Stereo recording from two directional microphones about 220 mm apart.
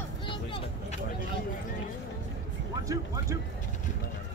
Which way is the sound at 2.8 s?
15° right (ahead or behind).